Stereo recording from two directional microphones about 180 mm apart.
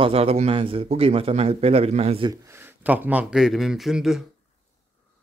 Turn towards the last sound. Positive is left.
turn(degrees=0)  # may be behind; listen again after turning